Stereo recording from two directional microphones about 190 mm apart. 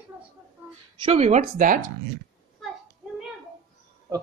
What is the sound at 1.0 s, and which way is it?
Speech, 35° right (ahead or behind).